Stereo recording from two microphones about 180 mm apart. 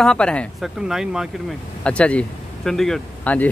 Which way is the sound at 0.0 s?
5° left (ahead or behind).